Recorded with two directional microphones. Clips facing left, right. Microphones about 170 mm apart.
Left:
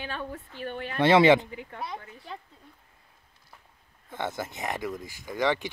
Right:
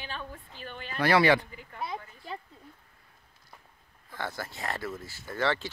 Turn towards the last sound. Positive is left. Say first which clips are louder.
# left 3 dB
turn(degrees=15)  # may be behind; listen again after turning